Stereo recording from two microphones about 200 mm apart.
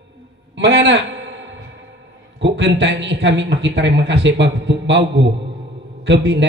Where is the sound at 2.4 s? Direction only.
60° right (ahead or behind).